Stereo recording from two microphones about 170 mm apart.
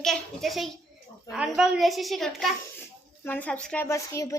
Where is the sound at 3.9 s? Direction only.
20° left (ahead or behind).